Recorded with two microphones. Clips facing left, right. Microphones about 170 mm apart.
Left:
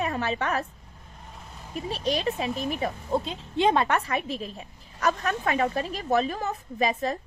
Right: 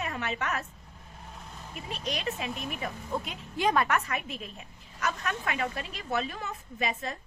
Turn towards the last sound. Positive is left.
turn(degrees=35)  # may be behind; listen again after turning